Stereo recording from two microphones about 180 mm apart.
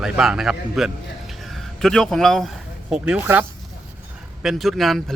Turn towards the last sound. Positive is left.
turn(degrees=0)  # may be behind; listen again after turning